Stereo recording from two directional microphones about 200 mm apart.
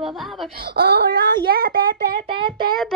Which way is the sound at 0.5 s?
50° right (ahead or behind).